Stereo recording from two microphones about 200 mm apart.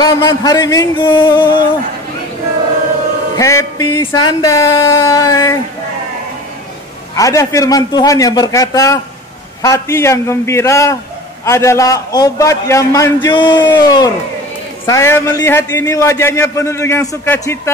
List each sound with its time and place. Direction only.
0.0 s a sound: 20° left (ahead or behind)
3.3 s a man's voice: 15° left (ahead or behind)
7.2 s a man's voice: 15° left (ahead or behind)